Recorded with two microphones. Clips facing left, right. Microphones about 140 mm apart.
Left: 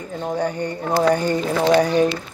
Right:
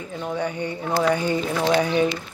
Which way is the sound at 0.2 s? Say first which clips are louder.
Left 3 dB; 40° left (ahead or behind).